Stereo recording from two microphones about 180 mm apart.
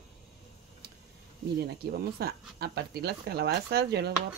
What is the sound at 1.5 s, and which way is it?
Speech, 60° right (ahead or behind).